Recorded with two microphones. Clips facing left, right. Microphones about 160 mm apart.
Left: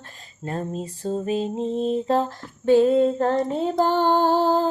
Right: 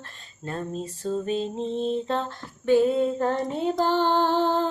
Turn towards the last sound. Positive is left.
turn(degrees=40)  # may be behind; listen again after turning